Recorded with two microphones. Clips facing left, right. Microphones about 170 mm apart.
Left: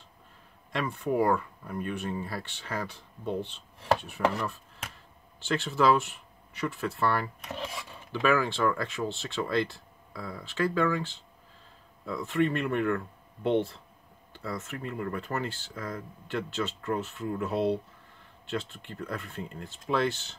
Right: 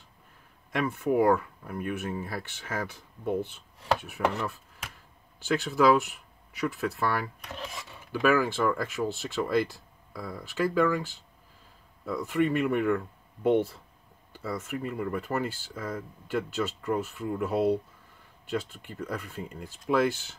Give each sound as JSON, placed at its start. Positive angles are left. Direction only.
{"t": 0.8, "sound": "speech", "side_deg": -5}
{"t": 5.5, "sound": "speech", "side_deg": -10}
{"t": 8.1, "sound": "speech", "side_deg": -5}